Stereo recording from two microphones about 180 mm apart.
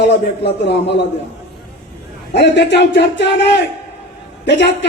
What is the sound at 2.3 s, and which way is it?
A man's voice, 75° left (ahead or behind).